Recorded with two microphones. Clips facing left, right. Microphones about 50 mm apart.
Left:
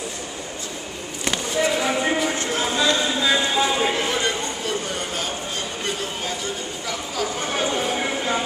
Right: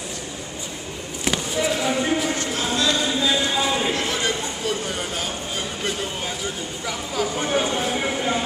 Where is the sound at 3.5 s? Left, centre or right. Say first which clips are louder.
Left 1 dB; centre.